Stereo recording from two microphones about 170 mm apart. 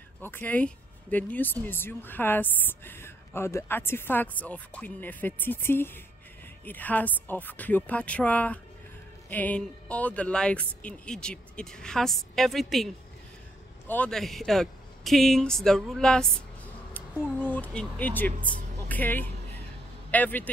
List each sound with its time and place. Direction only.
0.2 s speech: 10° left (ahead or behind)
17.5 s a man's voice: 10° left (ahead or behind)